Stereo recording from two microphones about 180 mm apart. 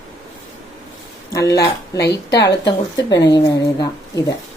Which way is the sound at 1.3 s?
20° left (ahead or behind).